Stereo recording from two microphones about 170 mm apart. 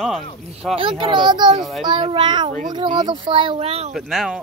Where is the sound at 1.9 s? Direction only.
30° right (ahead or behind).